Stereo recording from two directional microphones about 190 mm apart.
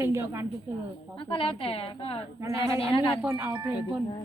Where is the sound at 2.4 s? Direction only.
15° right (ahead or behind).